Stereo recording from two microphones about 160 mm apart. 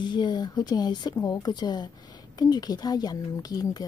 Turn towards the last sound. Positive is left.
turn(degrees=25)  # may be behind; listen again after turning